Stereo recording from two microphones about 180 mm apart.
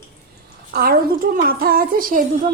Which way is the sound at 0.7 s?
55° right (ahead or behind).